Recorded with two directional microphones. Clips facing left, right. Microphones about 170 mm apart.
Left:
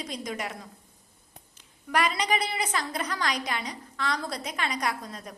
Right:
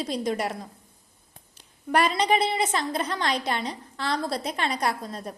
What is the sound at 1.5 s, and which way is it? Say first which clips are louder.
A woman's voice: right 4 dB; 30° right (ahead or behind).